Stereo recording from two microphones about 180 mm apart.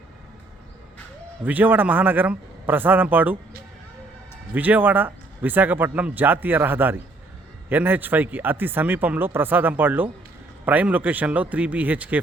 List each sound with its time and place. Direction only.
1.5 s speech: 10° right (ahead or behind)
4.5 s speech: 10° right (ahead or behind)